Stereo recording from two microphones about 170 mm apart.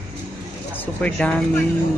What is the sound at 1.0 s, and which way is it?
Speech, 5° left (ahead or behind).